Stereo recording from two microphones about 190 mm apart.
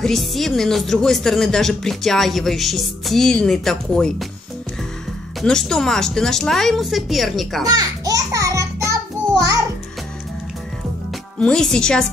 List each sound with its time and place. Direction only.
0.0 s speech: centre (ahead or behind)
5.4 s speech: 5° left (ahead or behind)
7.6 s music: 20° right (ahead or behind)
11.3 s speech: 5° left (ahead or behind)